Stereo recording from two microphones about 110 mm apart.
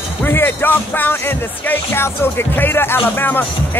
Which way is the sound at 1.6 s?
20° left (ahead or behind).